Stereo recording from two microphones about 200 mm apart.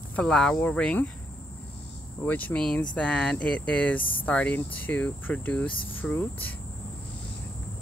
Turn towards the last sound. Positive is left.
turn(degrees=10)  # may be behind; listen again after turning